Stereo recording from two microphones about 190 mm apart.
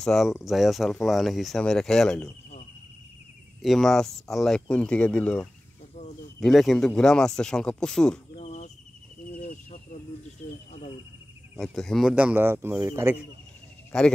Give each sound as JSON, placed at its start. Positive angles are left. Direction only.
{"t": 0.0, "sound": "speech", "side_deg": 0}
{"t": 3.6, "sound": "speech", "side_deg": 0}
{"t": 8.4, "sound": "cricket", "side_deg": 35}
{"t": 9.2, "sound": "a sound", "side_deg": 45}
{"t": 11.5, "sound": "speech", "side_deg": 0}
{"t": 13.9, "sound": "speech", "side_deg": 5}